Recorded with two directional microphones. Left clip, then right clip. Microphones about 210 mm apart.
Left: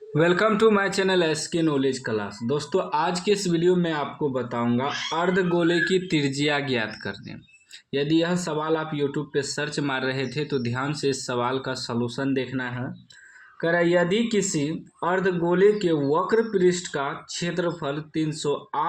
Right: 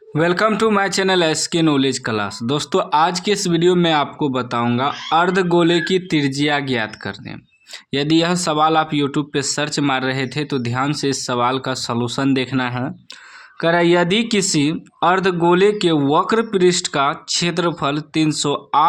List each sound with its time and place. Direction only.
0.1 s speech: 15° right (ahead or behind); by 18.9 s 40° right (ahead or behind)